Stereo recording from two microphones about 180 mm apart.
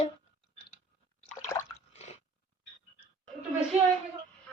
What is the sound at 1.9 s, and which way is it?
Squish, 35° left (ahead or behind).